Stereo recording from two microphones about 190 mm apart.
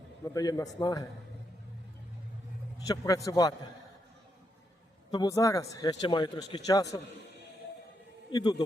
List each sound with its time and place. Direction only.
0.3 s speech: 20° left (ahead or behind)
2.7 s a man's voice: 20° left (ahead or behind)
5.1 s speech: 20° left (ahead or behind)
8.3 s speech: 20° left (ahead or behind)